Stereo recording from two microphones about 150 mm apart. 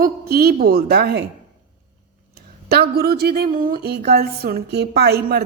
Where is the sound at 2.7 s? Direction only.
90° right.